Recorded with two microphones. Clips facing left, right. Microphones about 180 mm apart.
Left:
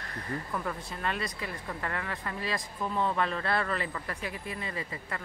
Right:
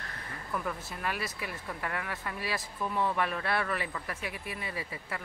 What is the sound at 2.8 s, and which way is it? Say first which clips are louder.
Speech: left 1 dB; 25° left (ahead or behind).